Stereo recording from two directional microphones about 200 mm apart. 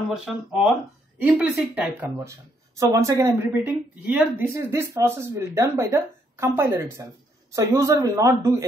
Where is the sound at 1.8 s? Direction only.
10° right (ahead or behind).